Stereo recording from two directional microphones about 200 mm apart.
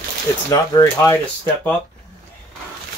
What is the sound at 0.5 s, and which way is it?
Speech, 15° left (ahead or behind).